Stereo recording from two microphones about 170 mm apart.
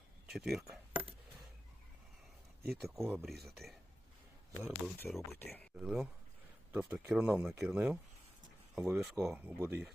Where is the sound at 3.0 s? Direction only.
15° right (ahead or behind).